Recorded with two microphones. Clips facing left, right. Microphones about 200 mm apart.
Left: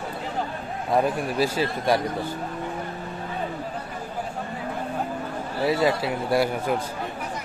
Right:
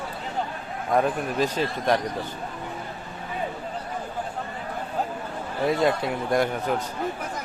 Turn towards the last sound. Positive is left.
turn(degrees=10)  # may be behind; listen again after turning